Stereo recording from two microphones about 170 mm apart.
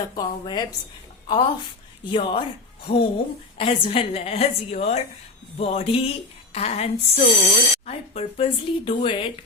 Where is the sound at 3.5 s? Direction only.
35° left (ahead or behind).